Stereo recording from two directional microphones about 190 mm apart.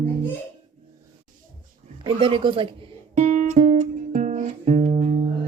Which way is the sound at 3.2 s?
40° right (ahead or behind).